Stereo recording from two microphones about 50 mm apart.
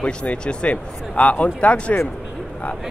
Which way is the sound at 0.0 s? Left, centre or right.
Left.